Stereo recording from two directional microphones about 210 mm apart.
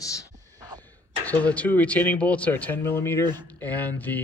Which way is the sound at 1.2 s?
5° left (ahead or behind).